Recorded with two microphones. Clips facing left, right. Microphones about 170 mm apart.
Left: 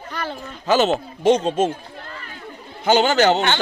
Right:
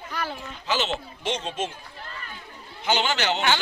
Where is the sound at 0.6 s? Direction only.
45° left (ahead or behind).